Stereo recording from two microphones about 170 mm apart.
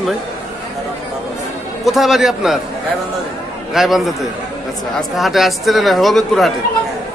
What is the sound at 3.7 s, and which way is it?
Speech, centre (ahead or behind).